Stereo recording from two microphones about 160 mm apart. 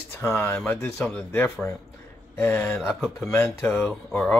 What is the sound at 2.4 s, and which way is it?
Speech, 15° left (ahead or behind).